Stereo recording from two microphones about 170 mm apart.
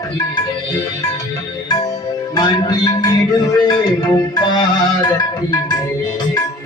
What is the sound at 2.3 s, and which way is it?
Music, 25° left (ahead or behind).